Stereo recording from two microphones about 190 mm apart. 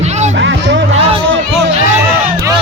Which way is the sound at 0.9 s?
30° right (ahead or behind).